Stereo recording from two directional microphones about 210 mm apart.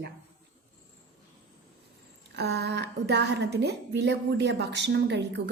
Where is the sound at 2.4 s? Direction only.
55° right (ahead or behind).